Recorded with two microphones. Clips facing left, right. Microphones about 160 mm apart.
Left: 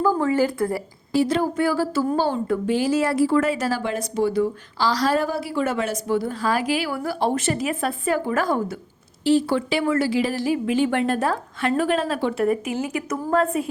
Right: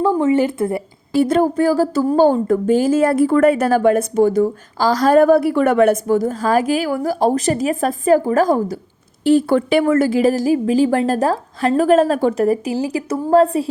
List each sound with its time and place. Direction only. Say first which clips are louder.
0.0 s speech: right 5 dB; 25° right (ahead or behind)
1.2 s speech: right 7 dB; 50° right (ahead or behind)
9.2 s a woman's voice: right 5 dB; 50° right (ahead or behind); by 13.7 s 30° right (ahead or behind)